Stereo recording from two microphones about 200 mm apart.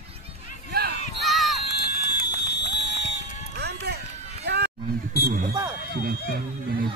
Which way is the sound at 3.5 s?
55° right (ahead or behind).